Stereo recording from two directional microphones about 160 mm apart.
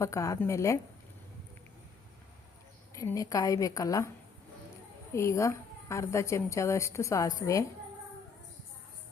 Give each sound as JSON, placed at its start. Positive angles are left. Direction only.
{"t": 0.0, "sound": "a woman's voice", "side_deg": 20}
{"t": 2.9, "sound": "a woman's voice", "side_deg": 20}
{"t": 5.1, "sound": "a woman's voice", "side_deg": 20}